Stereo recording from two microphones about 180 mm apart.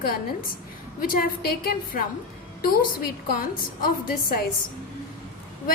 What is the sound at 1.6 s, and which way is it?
A woman's voice, 55° left (ahead or behind).